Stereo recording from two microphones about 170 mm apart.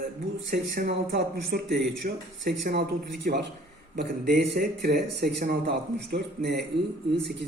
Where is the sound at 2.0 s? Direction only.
55° right (ahead or behind).